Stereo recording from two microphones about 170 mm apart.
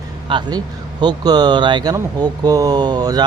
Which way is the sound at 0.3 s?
25° right (ahead or behind).